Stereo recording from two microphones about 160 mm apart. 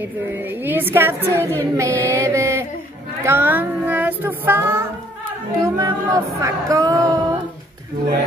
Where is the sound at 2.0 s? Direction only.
20° right (ahead or behind).